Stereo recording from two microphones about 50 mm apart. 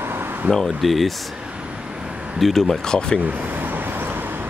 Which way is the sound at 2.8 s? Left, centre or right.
Centre.